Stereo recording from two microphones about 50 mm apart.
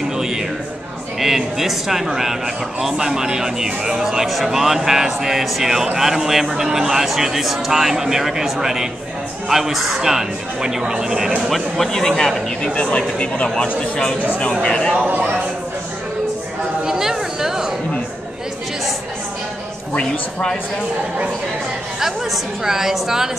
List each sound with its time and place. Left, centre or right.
1.2 s a man's voice: centre
11.4 s speech: centre
12.6 s a man's voice: centre
15.0 s a sound: right
16.8 s a sound: centre
22.0 s a man's voice: centre